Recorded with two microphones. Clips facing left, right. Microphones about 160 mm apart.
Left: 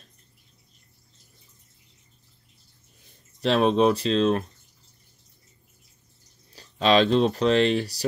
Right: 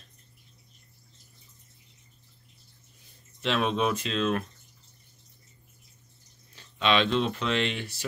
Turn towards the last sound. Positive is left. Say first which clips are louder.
# left 8 dB
turn(degrees=35)  # may be behind; listen again after turning